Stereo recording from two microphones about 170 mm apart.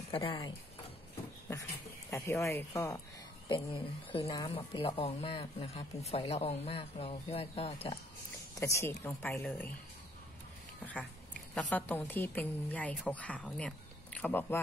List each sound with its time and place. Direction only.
0.1 s speech: 30° left (ahead or behind)
2.0 s a woman's voice: 15° left (ahead or behind)
3.4 s speech: 30° left (ahead or behind)
8.5 s a woman's voice: 15° left (ahead or behind)
11.5 s a woman's voice: 10° left (ahead or behind)